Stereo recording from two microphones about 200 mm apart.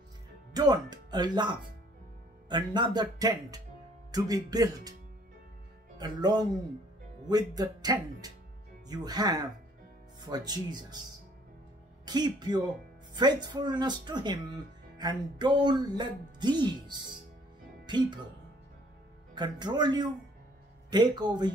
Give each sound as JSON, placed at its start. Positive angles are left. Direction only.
{"t": 0.5, "sound": "speech", "side_deg": -20}
{"t": 5.9, "sound": "speech", "side_deg": -20}
{"t": 12.1, "sound": "speech", "side_deg": -20}
{"t": 19.3, "sound": "speech", "side_deg": -20}